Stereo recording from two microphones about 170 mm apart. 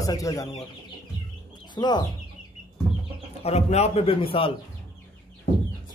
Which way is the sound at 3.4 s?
40° left (ahead or behind).